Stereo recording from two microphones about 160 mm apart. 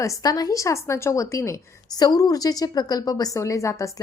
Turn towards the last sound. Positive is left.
turn(degrees=20)  # may be behind; listen again after turning